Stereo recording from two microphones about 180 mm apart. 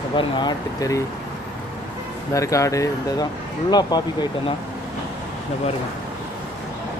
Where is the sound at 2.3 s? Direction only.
15° left (ahead or behind).